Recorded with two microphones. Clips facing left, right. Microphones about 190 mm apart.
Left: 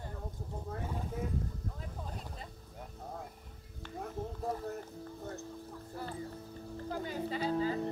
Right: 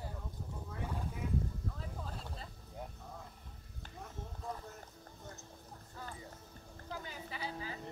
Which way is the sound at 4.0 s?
55° left (ahead or behind).